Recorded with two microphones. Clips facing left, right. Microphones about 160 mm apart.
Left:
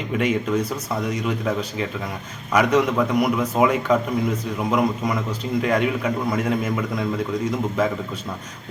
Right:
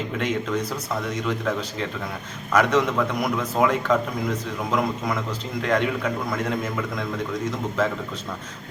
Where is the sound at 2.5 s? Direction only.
10° left (ahead or behind).